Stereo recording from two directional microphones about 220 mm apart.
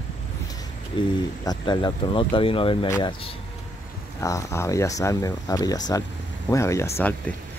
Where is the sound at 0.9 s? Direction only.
20° left (ahead or behind).